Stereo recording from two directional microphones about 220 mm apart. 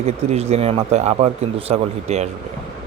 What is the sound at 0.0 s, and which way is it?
Speech, 30° right (ahead or behind).